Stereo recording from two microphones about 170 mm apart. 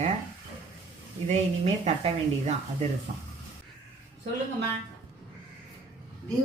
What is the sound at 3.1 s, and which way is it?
Speech, 50° right (ahead or behind).